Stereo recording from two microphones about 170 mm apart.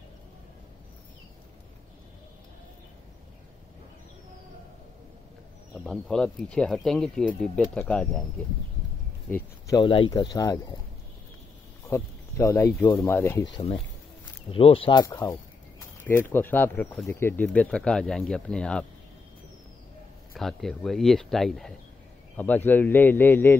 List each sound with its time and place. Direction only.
5.9 s speech: 5° left (ahead or behind)
9.8 s speech: 30° left (ahead or behind)
11.9 s speech: 15° left (ahead or behind)
14.5 s speech: 35° left (ahead or behind)
16.0 s speech: 15° left (ahead or behind)
20.3 s speech: centre (ahead or behind)